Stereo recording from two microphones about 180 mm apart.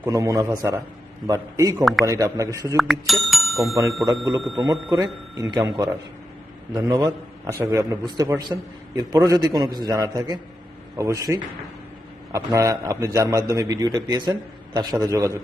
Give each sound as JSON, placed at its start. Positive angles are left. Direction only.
{"t": 0.0, "sound": "a man's voice", "side_deg": -20}
{"t": 1.8, "sound": "speech", "side_deg": 0}
{"t": 2.0, "sound": "a man's voice", "side_deg": -20}
{"t": 2.7, "sound": "speech", "side_deg": 0}
{"t": 4.6, "sound": "a man's voice", "side_deg": -20}